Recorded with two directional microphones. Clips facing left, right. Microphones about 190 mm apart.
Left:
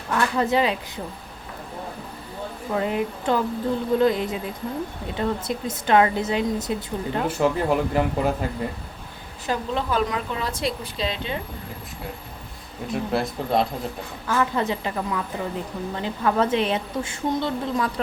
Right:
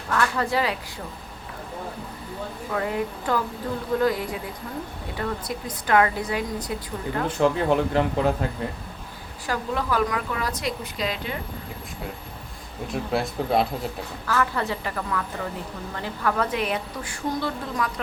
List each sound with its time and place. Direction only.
0.1 s a woman's voice: 20° left (ahead or behind)
2.7 s a woman's voice: 20° left (ahead or behind)
7.3 s speech: 5° left (ahead or behind)
9.5 s a woman's voice: 20° left (ahead or behind)
12.9 s speech: centre (ahead or behind)
14.3 s a woman's voice: 20° left (ahead or behind)